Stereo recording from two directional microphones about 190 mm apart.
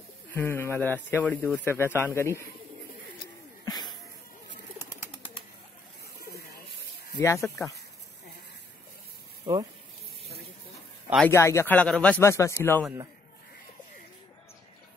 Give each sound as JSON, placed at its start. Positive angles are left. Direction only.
{"t": 0.3, "sound": "speech", "side_deg": 10}
{"t": 3.6, "sound": "a sound", "side_deg": 20}
{"t": 7.2, "sound": "speech", "side_deg": 15}
{"t": 11.1, "sound": "speech", "side_deg": 10}